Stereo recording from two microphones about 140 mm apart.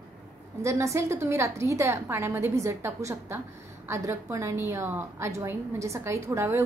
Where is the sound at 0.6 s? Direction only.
20° right (ahead or behind).